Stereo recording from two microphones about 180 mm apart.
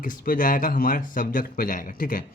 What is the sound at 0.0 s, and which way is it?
A man's voice, 50° left (ahead or behind).